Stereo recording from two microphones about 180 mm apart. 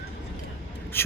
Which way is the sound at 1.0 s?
10° left (ahead or behind).